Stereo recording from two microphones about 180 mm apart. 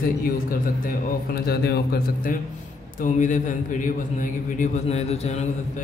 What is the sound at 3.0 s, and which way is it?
A man's voice, 45° left (ahead or behind).